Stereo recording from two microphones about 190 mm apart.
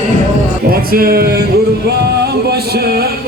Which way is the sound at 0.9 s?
55° right (ahead or behind).